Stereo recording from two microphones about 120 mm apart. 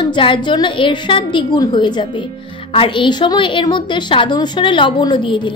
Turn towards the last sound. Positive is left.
turn(degrees=40)  # may be behind; listen again after turning